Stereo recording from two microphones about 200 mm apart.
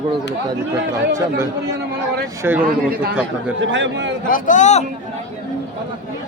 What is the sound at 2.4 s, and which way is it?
Speech, 10° right (ahead or behind).